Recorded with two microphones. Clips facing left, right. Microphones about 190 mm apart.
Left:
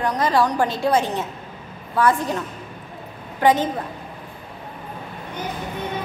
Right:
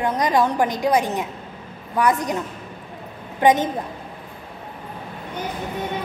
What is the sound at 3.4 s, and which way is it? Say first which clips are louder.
Speech: right 1 dB; 20° right (ahead or behind).